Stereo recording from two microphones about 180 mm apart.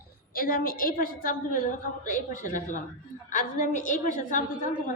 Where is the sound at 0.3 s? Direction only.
55° left (ahead or behind).